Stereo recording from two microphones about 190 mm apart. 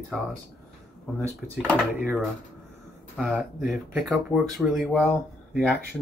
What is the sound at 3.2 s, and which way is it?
Speech, 5° right (ahead or behind).